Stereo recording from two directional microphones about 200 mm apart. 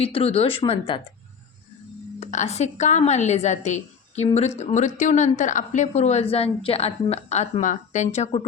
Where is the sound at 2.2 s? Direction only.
35° left (ahead or behind).